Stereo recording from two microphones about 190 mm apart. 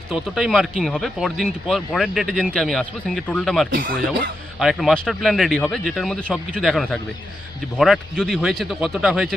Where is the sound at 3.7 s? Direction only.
50° right (ahead or behind).